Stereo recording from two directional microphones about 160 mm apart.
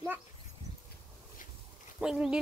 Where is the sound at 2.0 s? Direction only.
5° right (ahead or behind).